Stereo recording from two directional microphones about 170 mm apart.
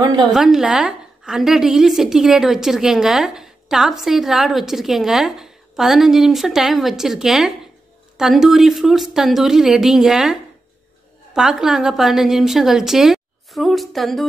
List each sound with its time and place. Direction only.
0.0 s a woman's voice: 25° right (ahead or behind)
0.3 s a woman's voice: centre (ahead or behind)